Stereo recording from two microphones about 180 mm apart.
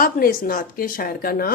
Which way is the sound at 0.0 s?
55° left (ahead or behind).